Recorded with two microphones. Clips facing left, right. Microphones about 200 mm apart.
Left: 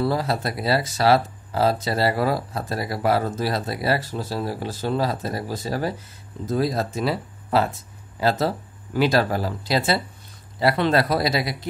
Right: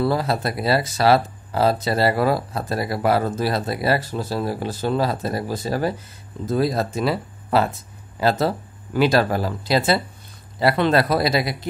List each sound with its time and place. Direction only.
0.0 s speech: 60° right (ahead or behind)